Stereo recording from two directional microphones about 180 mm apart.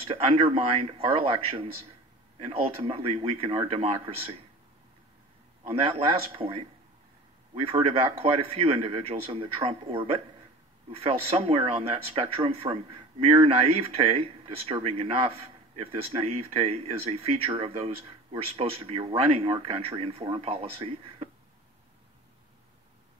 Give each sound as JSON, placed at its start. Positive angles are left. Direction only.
{"t": 0.0, "sound": "speech", "side_deg": -35}
{"t": 5.6, "sound": "speech", "side_deg": -30}